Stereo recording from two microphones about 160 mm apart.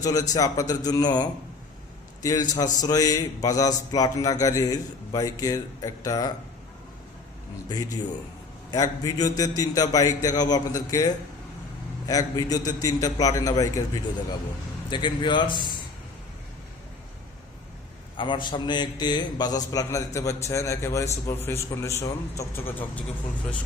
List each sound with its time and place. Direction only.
0.0 s speech: 20° left (ahead or behind)
8.7 s speech: 25° left (ahead or behind)
18.2 s a man's voice: 30° left (ahead or behind); by 23.0 s 15° left (ahead or behind)